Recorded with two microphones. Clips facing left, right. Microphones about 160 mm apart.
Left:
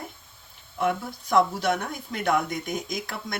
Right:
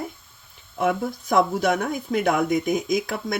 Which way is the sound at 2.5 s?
5° right (ahead or behind).